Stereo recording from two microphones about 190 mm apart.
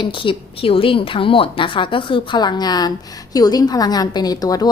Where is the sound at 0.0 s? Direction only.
25° left (ahead or behind).